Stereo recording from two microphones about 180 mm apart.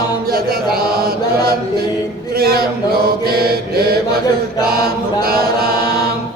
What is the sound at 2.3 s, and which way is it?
Mantra, 60° right (ahead or behind).